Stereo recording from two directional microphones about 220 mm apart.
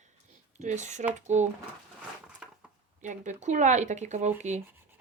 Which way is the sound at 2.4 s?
5° right (ahead or behind).